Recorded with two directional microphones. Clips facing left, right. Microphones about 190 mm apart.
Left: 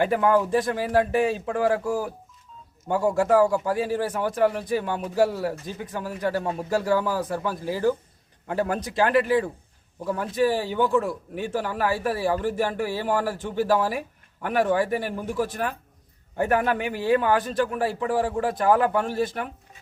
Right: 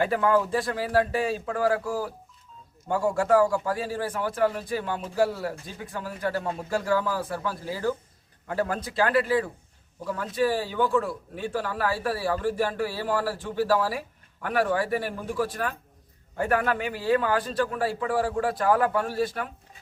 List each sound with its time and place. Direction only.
0.1 s a man's voice: 15° left (ahead or behind)